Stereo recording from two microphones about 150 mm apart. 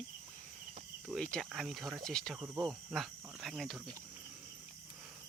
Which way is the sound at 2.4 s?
20° right (ahead or behind).